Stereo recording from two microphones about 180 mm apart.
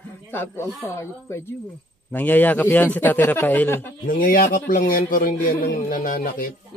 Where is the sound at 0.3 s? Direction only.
10° left (ahead or behind).